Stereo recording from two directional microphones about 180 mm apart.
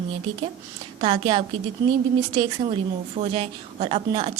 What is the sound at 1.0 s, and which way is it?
A woman's voice, 30° right (ahead or behind).